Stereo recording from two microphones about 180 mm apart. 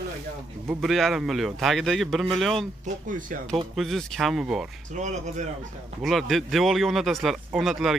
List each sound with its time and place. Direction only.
0.7 s speech: centre (ahead or behind)
3.1 s speech: 50° right (ahead or behind)
3.7 s speech: centre (ahead or behind)
4.9 s speech: 40° right (ahead or behind)
6.0 s speech: centre (ahead or behind)